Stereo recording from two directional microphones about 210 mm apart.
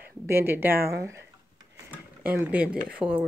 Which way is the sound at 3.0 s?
25° right (ahead or behind).